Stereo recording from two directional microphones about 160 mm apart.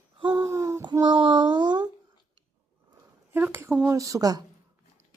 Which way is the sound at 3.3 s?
10° right (ahead or behind).